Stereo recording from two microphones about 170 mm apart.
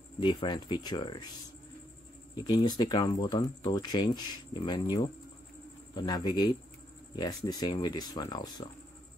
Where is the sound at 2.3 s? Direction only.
25° left (ahead or behind).